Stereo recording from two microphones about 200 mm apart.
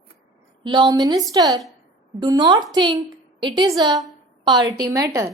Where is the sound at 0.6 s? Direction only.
25° right (ahead or behind).